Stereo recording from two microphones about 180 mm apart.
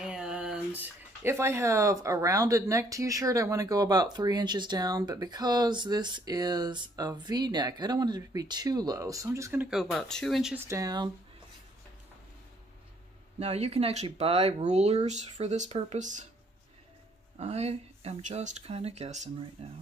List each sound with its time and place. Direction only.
0.0 s speech: 5° right (ahead or behind)
10.6 s speech: 15° right (ahead or behind)
13.4 s speech: 35° right (ahead or behind)
17.4 s speech: 35° right (ahead or behind)